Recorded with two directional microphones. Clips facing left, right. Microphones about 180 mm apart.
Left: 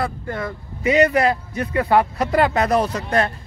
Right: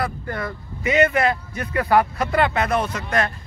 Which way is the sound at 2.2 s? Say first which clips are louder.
Left 2 dB; 40° left (ahead or behind).